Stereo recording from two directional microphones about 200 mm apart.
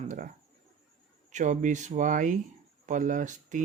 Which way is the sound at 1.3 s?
40° right (ahead or behind).